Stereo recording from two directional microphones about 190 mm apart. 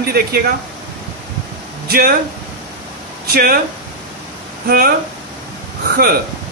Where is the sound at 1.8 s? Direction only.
55° right (ahead or behind).